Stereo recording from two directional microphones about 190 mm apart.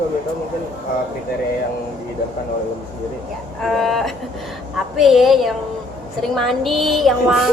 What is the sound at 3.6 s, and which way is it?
A woman's voice, centre (ahead or behind).